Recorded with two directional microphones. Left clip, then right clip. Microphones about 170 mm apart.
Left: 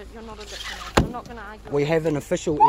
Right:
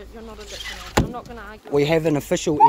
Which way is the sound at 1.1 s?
35° right (ahead or behind).